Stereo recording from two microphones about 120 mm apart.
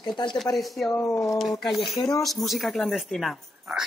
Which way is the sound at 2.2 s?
Centre (ahead or behind).